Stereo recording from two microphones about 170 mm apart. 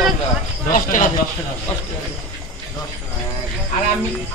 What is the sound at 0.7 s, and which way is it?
Speech, 50° left (ahead or behind).